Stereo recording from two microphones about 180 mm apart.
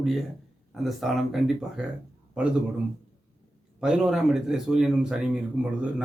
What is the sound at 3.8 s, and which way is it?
A man's voice, 5° right (ahead or behind).